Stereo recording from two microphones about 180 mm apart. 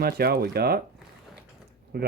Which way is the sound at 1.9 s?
60° right (ahead or behind).